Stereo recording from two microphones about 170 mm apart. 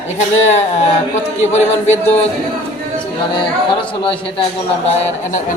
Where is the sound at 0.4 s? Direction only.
40° left (ahead or behind).